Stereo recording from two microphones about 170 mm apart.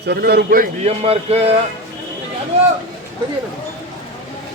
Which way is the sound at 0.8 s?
35° right (ahead or behind).